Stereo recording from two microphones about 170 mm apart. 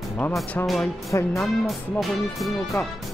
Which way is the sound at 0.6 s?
10° left (ahead or behind).